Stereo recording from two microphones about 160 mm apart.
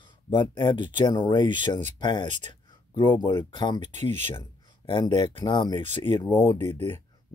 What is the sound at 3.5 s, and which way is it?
Speech, 30° left (ahead or behind).